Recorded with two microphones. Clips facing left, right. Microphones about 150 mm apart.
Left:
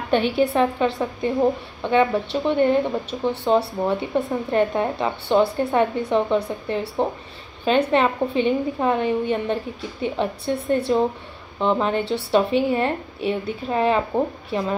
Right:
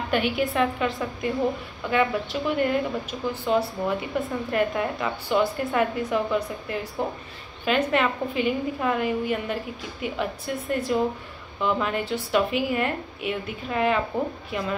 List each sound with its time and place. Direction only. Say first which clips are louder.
0.1 s a woman's voice: left 6 dB; 30° left (ahead or behind)